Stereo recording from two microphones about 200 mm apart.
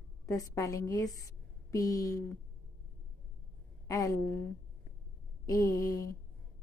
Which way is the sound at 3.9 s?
15° left (ahead or behind).